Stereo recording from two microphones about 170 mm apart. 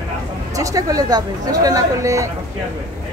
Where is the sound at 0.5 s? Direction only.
20° right (ahead or behind).